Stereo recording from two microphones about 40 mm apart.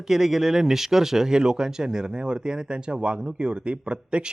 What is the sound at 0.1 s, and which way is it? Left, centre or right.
Speech, centre.